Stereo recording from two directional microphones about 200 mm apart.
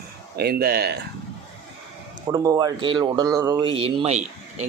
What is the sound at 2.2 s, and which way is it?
Speech, 20° right (ahead or behind).